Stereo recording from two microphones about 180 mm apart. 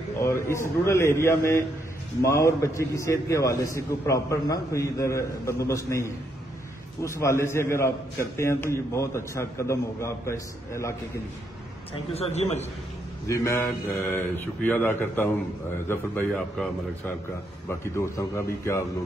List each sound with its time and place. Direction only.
0.2 s a man's voice: 15° left (ahead or behind)
11.9 s a man's voice: 35° left (ahead or behind)
13.3 s a man's voice: 15° left (ahead or behind)